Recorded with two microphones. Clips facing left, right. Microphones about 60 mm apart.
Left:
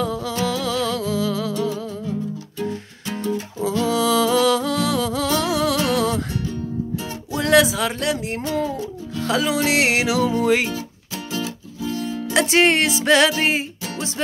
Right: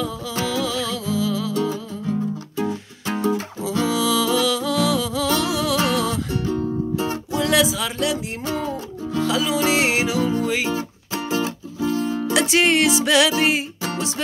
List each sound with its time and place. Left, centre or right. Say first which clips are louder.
0.5 s music: even; left
1.5 s music: right 1 dB; right
3.8 s music: left 2 dB; left
7.3 s a sound: left 3 dB; left
9.2 s music: left 1 dB; left
9.7 s music: left 1 dB; left
10.4 s music: left 4 dB; left
11.3 s music: right 3 dB; right
12.4 s music: left 2 dB; left